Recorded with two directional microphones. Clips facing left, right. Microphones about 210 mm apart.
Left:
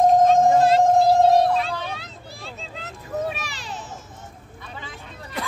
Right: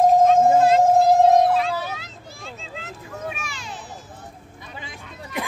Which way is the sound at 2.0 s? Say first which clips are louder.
Left 1 dB; 35° left (ahead or behind).